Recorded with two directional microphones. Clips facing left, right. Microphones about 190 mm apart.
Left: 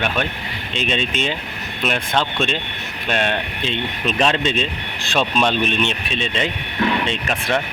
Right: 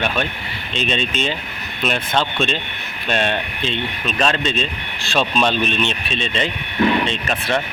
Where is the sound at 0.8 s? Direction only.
10° left (ahead or behind).